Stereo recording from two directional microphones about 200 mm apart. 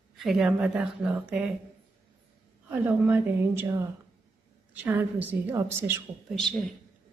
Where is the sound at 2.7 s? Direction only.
10° right (ahead or behind).